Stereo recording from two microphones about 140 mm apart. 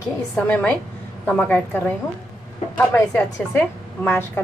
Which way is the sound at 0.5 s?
10° left (ahead or behind).